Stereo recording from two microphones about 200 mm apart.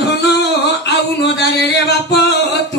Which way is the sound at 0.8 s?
60° left (ahead or behind).